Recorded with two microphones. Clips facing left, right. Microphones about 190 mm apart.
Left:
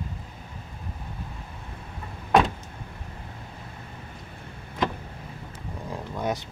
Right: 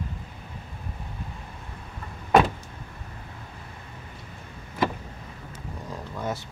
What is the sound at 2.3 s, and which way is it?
Vehicle, 5° right (ahead or behind).